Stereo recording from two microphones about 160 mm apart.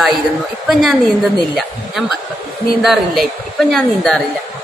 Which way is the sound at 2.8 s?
Centre (ahead or behind).